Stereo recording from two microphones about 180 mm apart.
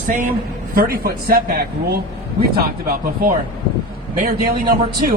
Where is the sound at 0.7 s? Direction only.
55° right (ahead or behind).